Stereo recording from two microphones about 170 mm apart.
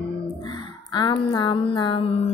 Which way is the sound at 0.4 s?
25° left (ahead or behind).